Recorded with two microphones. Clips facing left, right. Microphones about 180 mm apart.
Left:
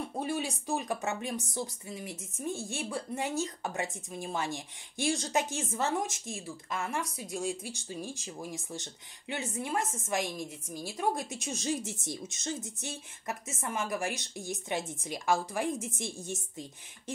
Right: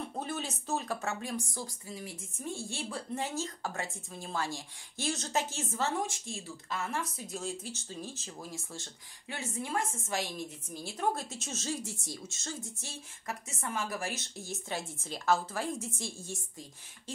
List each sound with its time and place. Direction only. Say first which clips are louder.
0.2 s speech: left 6 dB; 10° left (ahead or behind)
10.7 s speech: left 1 dB; 10° left (ahead or behind)